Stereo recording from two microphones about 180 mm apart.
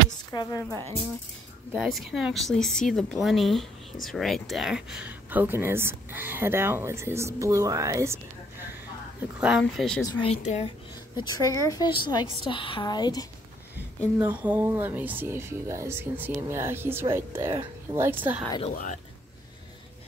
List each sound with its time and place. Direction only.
0.3 s speech: 20° left (ahead or behind)
1.7 s speech: centre (ahead or behind)
9.4 s speech: centre (ahead or behind)
10.2 s a woman's voice: 40° left (ahead or behind)
11.1 s a woman's voice: 20° left (ahead or behind)
14.1 s speech: 10° right (ahead or behind)